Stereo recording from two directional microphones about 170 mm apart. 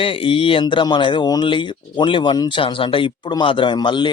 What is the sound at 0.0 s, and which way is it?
Speech, 30° left (ahead or behind).